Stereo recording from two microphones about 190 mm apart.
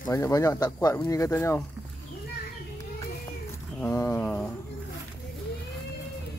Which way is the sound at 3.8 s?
15° left (ahead or behind).